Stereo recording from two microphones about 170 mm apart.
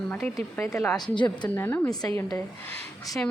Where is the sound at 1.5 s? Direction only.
15° left (ahead or behind).